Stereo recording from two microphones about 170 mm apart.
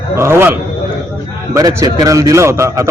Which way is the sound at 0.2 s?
15° right (ahead or behind).